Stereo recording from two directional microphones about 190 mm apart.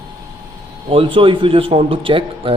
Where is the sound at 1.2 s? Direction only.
25° right (ahead or behind).